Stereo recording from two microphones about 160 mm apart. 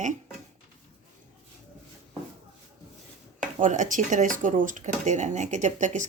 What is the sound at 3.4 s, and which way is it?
Speech, 55° right (ahead or behind).